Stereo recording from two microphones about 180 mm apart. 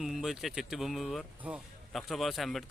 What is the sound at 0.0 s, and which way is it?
Speech, centre (ahead or behind).